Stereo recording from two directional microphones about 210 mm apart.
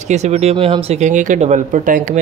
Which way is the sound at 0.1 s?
30° right (ahead or behind).